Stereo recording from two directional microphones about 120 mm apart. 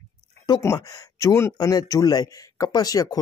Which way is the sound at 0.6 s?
25° left (ahead or behind).